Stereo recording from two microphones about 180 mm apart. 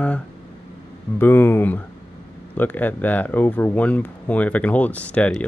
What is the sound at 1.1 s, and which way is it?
Speech, 10° left (ahead or behind).